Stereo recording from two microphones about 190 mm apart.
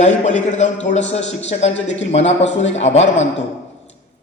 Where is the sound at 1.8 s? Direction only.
75° left (ahead or behind).